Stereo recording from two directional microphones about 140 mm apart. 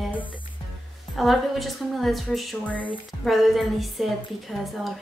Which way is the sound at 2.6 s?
10° left (ahead or behind).